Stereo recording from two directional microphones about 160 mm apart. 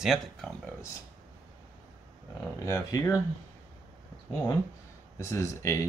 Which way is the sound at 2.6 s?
20° left (ahead or behind).